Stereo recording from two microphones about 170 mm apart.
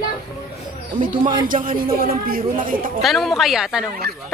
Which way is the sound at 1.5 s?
55° right (ahead or behind).